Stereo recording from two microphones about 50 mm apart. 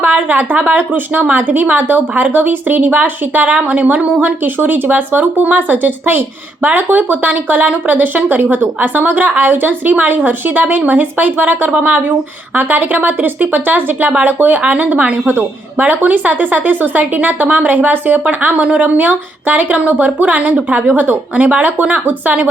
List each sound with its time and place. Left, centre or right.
0.0 s a woman's voice: right